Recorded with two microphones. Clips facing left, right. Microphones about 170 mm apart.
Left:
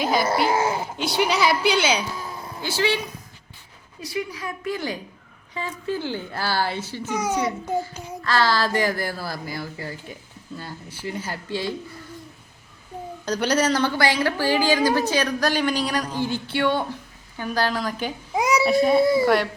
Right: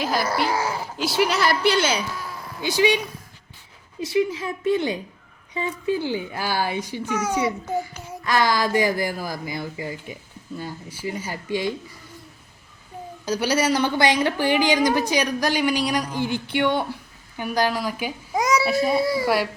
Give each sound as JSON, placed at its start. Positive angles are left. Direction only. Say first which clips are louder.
{"t": 0.0, "sound": "speech", "louder": "left 2 dB", "side_deg": 0}
{"t": 0.5, "sound": "speech", "louder": "left 3 dB", "side_deg": 25}
{"t": 0.9, "sound": "speech", "louder": "right 3 dB", "side_deg": 0}
{"t": 2.6, "sound": "a woman's voice", "louder": "right 4 dB", "side_deg": -15}
{"t": 4.0, "sound": "a woman's voice", "louder": "right 7 dB", "side_deg": -25}
{"t": 7.1, "sound": "a child's voice", "louder": "even", "side_deg": 10}
{"t": 8.2, "sound": "a woman's voice", "louder": "right 1 dB", "side_deg": -15}
{"t": 13.2, "sound": "a woman's voice", "louder": "even", "side_deg": -10}
{"t": 18.3, "sound": "a sound", "louder": "even", "side_deg": 10}
{"t": 18.6, "sound": "a woman's voice", "louder": "left 3 dB", "side_deg": 0}